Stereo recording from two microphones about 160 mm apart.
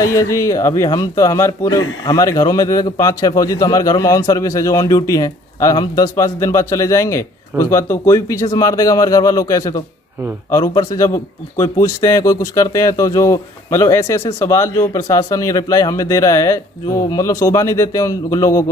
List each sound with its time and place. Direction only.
0.0 s a man's voice: 20° left (ahead or behind)